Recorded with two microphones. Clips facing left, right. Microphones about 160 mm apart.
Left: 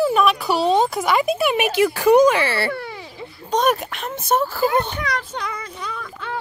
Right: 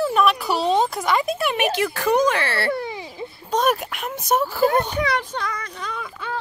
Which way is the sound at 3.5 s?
5° right (ahead or behind).